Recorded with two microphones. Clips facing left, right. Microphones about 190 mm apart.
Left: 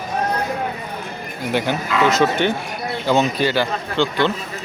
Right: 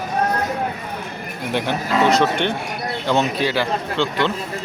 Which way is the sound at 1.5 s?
Centre (ahead or behind).